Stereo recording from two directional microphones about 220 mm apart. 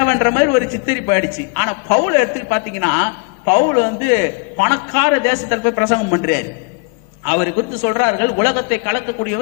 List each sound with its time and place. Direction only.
0.0 s a woman's voice: 15° left (ahead or behind)